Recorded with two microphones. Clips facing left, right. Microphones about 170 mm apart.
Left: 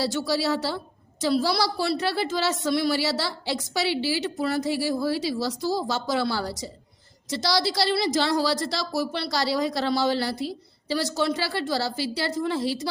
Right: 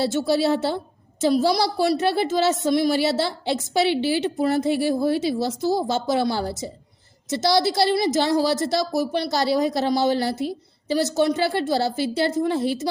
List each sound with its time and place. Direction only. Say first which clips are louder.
0.3 s a woman's voice: right 5 dB; 25° right (ahead or behind)